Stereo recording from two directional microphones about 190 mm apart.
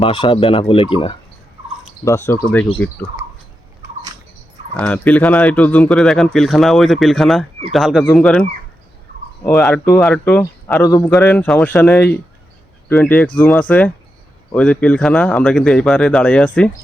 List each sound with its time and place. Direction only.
0.0 s speech: 30° left (ahead or behind)
2.0 s speech: 15° left (ahead or behind)
4.8 s speech: 5° left (ahead or behind)